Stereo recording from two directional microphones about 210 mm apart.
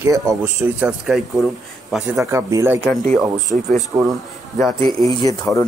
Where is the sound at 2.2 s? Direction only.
10° right (ahead or behind).